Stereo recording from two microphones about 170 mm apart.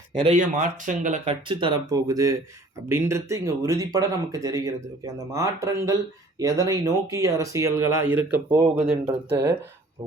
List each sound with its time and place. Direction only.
0.3 s speech: 45° right (ahead or behind); by 9.4 s 15° right (ahead or behind)